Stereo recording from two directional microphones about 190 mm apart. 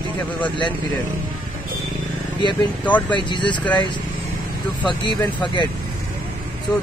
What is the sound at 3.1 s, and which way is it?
Speech, 25° left (ahead or behind).